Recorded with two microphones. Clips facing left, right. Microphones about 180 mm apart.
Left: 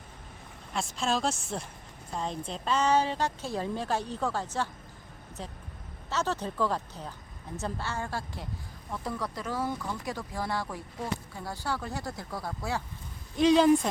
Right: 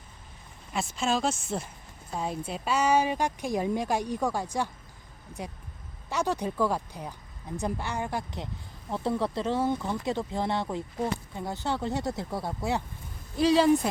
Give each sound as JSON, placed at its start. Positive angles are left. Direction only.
{"t": 0.7, "sound": "a woman's voice", "side_deg": 0}
{"t": 8.9, "sound": "speech", "side_deg": -25}
{"t": 13.3, "sound": "speech", "side_deg": 0}